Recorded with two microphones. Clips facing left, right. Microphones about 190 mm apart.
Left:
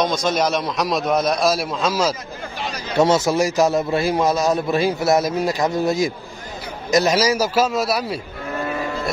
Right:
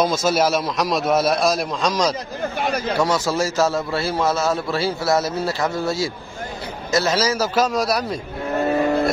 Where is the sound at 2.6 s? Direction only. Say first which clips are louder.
Right 6 dB; 55° right (ahead or behind).